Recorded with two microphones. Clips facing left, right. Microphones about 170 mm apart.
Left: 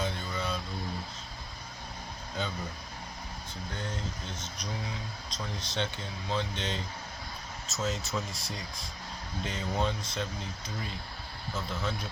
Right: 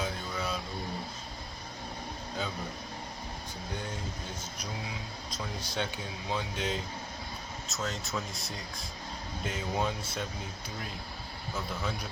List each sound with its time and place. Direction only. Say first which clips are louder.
0.0 s a sound: left 1 dB; 5° right (ahead or behind)
4.4 s speech: left 1 dB; 10° right (ahead or behind)
11.5 s speech: left 1 dB; 10° right (ahead or behind)